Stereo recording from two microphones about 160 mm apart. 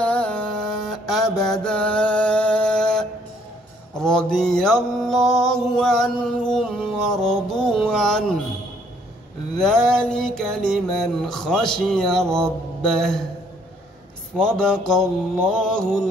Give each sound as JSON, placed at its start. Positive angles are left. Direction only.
{"t": 0.0, "sound": "mantra", "side_deg": 5}
{"t": 9.6, "sound": "mantra", "side_deg": 5}
{"t": 14.3, "sound": "mantra", "side_deg": 5}